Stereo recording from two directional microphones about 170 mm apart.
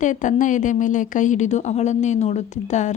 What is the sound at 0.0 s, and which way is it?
A woman's voice, 45° left (ahead or behind).